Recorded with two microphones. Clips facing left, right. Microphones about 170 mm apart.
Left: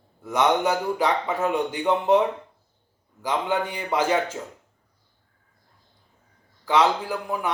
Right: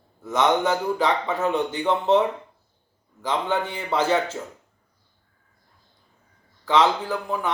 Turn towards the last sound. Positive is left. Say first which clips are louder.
# right 1 dB
turn(degrees=10)  # may be behind; listen again after turning